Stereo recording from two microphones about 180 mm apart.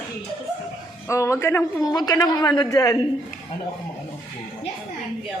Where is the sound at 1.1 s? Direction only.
15° left (ahead or behind).